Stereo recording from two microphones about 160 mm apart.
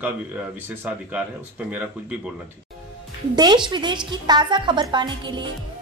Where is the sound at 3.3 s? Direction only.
25° right (ahead or behind).